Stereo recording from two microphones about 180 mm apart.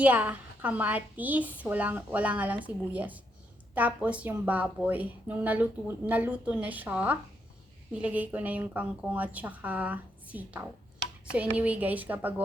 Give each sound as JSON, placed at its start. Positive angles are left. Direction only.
{"t": 0.0, "sound": "a woman's voice", "side_deg": -10}